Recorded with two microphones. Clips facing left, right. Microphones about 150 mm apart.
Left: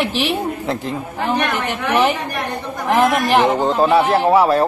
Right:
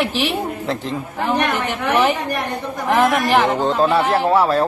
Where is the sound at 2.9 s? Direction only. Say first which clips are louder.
Left 1 dB; 10° left (ahead or behind).